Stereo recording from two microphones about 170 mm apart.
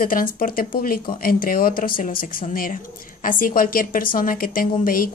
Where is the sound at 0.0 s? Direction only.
55° left (ahead or behind).